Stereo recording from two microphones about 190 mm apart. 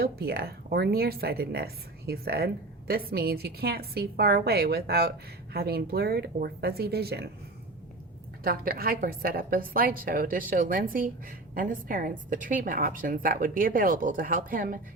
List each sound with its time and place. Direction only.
0.0 s speech: 55° right (ahead or behind)
8.4 s a woman's voice: 50° right (ahead or behind)